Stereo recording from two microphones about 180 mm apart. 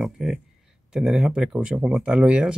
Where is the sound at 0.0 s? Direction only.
Centre (ahead or behind).